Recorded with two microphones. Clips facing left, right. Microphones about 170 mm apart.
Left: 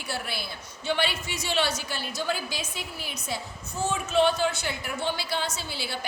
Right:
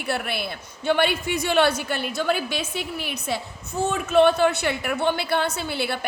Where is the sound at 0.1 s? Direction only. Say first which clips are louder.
Right 7 dB; 60° right (ahead or behind).